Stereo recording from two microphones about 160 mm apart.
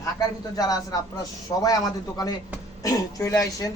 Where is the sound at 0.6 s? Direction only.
25° left (ahead or behind).